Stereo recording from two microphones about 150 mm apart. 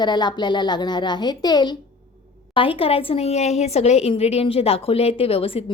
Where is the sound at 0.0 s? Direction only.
30° left (ahead or behind).